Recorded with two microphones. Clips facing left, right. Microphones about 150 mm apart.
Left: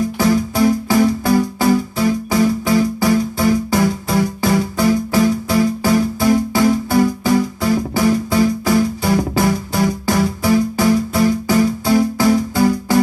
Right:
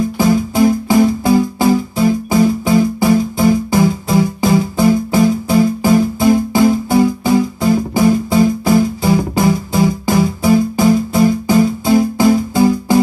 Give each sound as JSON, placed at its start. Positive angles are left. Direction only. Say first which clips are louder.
{"t": 0.2, "sound": "music", "louder": "right 3 dB", "side_deg": -20}